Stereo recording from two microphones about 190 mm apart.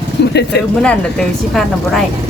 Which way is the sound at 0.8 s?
Centre (ahead or behind).